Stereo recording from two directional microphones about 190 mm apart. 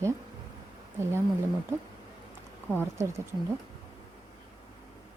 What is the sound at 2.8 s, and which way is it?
Speech, 15° right (ahead or behind).